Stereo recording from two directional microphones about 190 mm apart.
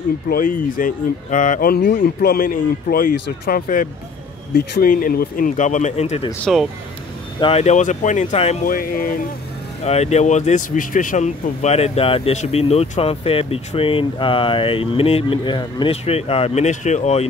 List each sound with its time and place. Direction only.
0.3 s speech: 45° left (ahead or behind)
6.4 s speech: centre (ahead or behind)
7.3 s speech: 30° left (ahead or behind)
8.6 s speech: 50° left (ahead or behind)
9.8 s speech: 35° left (ahead or behind)